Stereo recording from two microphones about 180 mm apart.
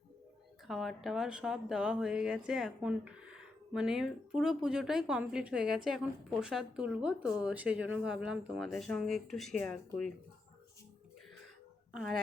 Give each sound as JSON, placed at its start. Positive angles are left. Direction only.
{"t": 0.7, "sound": "speech", "side_deg": 0}